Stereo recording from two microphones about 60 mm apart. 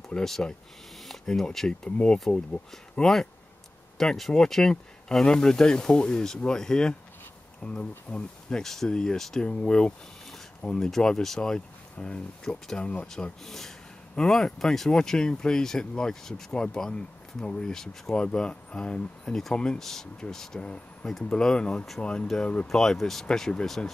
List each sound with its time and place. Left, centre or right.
0.1 s speech: centre
1.0 s a sound: centre
1.5 s speech: centre
1.9 s speech: centre
13.1 s speech: centre
22.7 s speech: centre